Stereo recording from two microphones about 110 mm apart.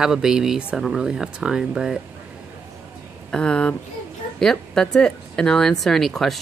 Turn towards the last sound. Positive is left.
turn(degrees=0)  # may be behind; listen again after turning